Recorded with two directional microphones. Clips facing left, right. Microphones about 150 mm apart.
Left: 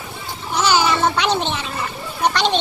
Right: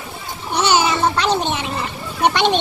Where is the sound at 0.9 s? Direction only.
5° right (ahead or behind).